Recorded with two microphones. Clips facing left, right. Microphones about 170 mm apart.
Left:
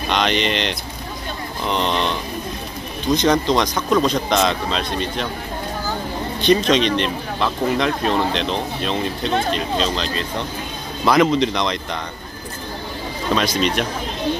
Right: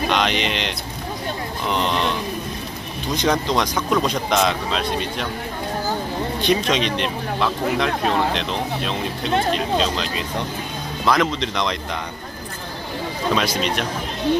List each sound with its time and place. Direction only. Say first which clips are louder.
0.1 s speech: left 5 dB; 5° right (ahead or behind)
3.2 s speech: left 2 dB; 5° right (ahead or behind)
6.4 s speech: left 5 dB; 5° right (ahead or behind)
13.3 s speech: left 3 dB; 5° right (ahead or behind)